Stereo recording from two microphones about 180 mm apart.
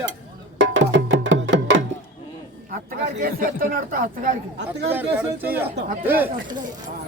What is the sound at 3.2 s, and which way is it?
Speech, 55° right (ahead or behind).